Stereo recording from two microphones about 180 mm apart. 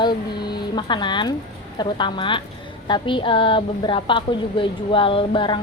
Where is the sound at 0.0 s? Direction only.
25° left (ahead or behind).